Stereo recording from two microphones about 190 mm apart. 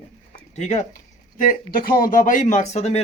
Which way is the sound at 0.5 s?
35° left (ahead or behind).